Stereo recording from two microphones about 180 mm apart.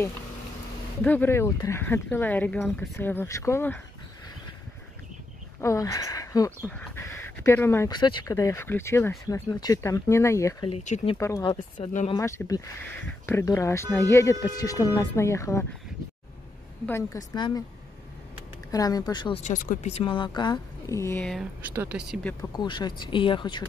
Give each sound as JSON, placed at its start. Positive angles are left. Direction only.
{"t": 1.0, "sound": "speech", "side_deg": 10}
{"t": 5.6, "sound": "speech", "side_deg": 15}
{"t": 6.8, "sound": "a sound", "side_deg": 15}
{"t": 7.9, "sound": "speech", "side_deg": 25}
{"t": 10.7, "sound": "speech", "side_deg": 40}
{"t": 11.1, "sound": "speech", "side_deg": 15}
{"t": 11.8, "sound": "speech", "side_deg": 35}
{"t": 12.2, "sound": "speech", "side_deg": 15}
{"t": 16.8, "sound": "speech", "side_deg": 15}
{"t": 18.7, "sound": "a woman's voice", "side_deg": 20}
{"t": 19.4, "sound": "a woman's voice", "side_deg": 45}
{"t": 21.6, "sound": "speech", "side_deg": -10}
{"t": 22.6, "sound": "a woman's voice", "side_deg": 25}